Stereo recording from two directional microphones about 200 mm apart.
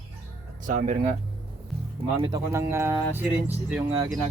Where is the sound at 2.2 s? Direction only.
15° right (ahead or behind).